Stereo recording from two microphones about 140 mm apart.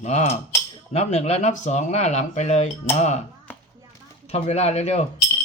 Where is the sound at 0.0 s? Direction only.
50° left (ahead or behind).